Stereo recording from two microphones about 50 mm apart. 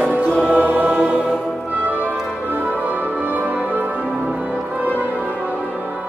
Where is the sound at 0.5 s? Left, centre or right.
Right.